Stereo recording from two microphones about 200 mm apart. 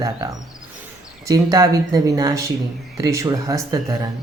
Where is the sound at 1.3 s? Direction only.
15° right (ahead or behind).